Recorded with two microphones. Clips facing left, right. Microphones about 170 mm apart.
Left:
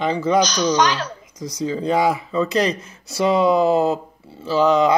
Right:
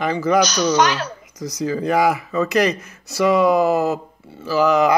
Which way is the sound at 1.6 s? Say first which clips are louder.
Right 1 dB; 25° left (ahead or behind).